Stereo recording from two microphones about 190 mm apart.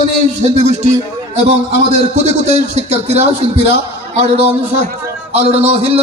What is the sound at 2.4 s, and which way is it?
A man's voice, 35° right (ahead or behind).